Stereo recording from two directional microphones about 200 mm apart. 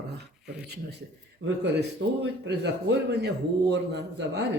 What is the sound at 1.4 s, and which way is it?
Speech, 65° right (ahead or behind).